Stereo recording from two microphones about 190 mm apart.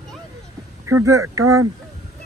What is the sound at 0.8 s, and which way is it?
Speech, 15° right (ahead or behind).